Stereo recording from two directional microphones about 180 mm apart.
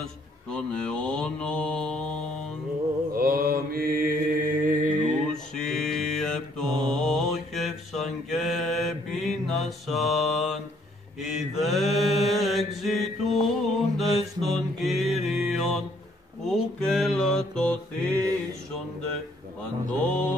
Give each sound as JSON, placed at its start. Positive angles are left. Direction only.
{"t": 0.0, "sound": "mantra", "side_deg": 5}
{"t": 3.2, "sound": "mantra", "side_deg": -55}
{"t": 5.3, "sound": "mantra", "side_deg": 5}
{"t": 20.1, "sound": "mantra", "side_deg": 10}